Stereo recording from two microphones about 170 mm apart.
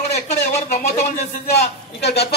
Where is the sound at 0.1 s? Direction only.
45° left (ahead or behind).